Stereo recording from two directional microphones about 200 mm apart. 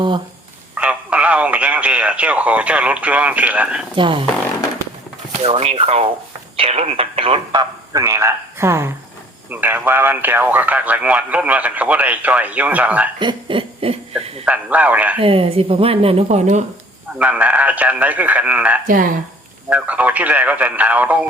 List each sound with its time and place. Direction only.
0.8 s speech: 5° right (ahead or behind)
3.9 s speech: 25° right (ahead or behind)
5.4 s speech: 30° right (ahead or behind); by 13.1 s 5° right (ahead or behind)
13.1 s speech: 25° right (ahead or behind)
14.4 s speech: 5° right (ahead or behind)
15.2 s speech: 25° right (ahead or behind)
17.2 s speech: 5° right (ahead or behind)
18.9 s speech: 45° right (ahead or behind)
19.7 s speech: 5° right (ahead or behind)